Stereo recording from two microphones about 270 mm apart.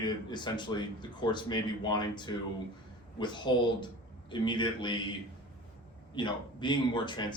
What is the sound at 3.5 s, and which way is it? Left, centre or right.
Speech, centre.